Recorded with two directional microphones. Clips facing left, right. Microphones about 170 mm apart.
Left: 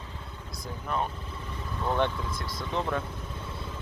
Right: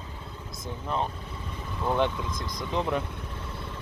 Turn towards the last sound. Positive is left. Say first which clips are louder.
# right 2 dB
turn(degrees=-15)  # may be behind; listen again after turning